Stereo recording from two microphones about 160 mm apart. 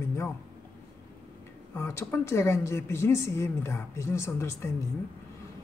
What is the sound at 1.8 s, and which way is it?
A woman's voice, 15° left (ahead or behind).